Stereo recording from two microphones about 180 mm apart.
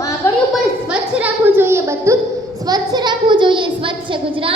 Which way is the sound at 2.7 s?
25° right (ahead or behind).